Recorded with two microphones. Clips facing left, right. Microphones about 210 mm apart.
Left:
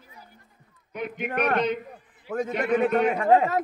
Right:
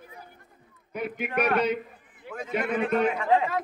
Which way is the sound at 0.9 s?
5° right (ahead or behind).